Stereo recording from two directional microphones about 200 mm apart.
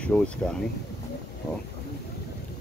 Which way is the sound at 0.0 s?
5° left (ahead or behind).